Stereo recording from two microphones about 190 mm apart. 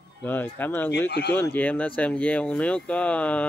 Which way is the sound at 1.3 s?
10° left (ahead or behind).